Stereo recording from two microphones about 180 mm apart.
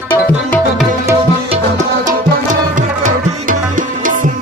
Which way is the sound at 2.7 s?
45° right (ahead or behind).